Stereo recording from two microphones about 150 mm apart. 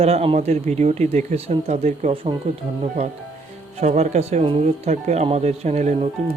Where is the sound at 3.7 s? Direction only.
50° right (ahead or behind).